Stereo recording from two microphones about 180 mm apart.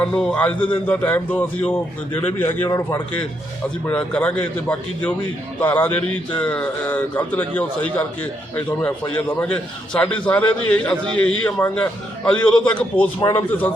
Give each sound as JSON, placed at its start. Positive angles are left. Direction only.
{"t": 0.0, "sound": "a man's voice", "side_deg": 5}
{"t": 3.8, "sound": "a man's voice", "side_deg": 5}
{"t": 5.5, "sound": "a man's voice", "side_deg": 10}